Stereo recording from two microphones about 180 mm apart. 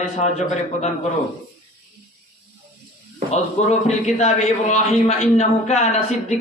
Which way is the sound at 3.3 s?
40° left (ahead or behind).